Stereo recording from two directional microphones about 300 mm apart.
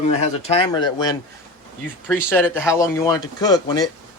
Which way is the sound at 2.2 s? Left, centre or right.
Centre.